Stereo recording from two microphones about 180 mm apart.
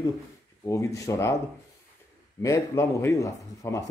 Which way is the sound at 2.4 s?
15° left (ahead or behind).